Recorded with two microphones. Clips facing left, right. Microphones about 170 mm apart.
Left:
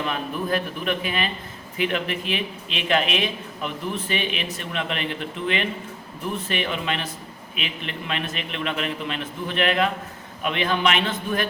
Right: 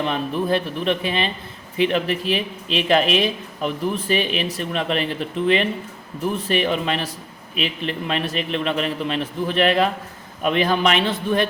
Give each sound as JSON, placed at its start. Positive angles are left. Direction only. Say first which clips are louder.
{"t": 0.0, "sound": "speech", "louder": "right 5 dB", "side_deg": -30}
{"t": 6.5, "sound": "speech", "louder": "right 6 dB", "side_deg": -35}